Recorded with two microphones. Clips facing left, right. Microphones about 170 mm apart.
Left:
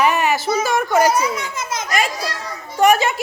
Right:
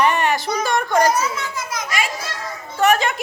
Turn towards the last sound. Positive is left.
turn(degrees=5)  # may be behind; listen again after turning